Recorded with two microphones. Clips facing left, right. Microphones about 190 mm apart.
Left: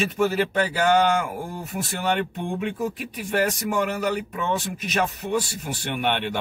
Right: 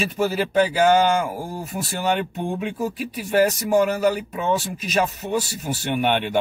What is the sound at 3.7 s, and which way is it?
Speech, 35° right (ahead or behind).